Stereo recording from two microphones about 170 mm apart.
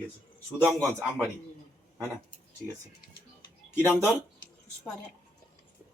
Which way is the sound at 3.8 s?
10° right (ahead or behind).